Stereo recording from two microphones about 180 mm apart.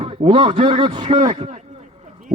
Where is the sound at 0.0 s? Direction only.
30° right (ahead or behind).